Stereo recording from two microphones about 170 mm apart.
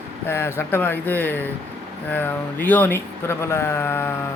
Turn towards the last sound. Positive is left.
turn(degrees=15)  # may be behind; listen again after turning